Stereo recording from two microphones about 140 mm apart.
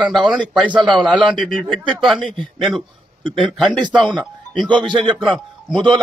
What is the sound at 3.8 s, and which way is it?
Speech, 35° right (ahead or behind).